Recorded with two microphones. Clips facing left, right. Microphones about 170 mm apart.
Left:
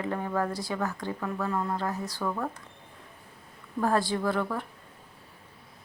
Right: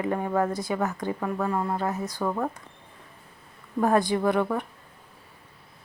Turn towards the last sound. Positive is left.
turn(degrees=-20)  # may be behind; listen again after turning